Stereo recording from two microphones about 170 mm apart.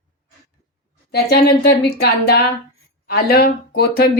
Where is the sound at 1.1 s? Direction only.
65° left (ahead or behind).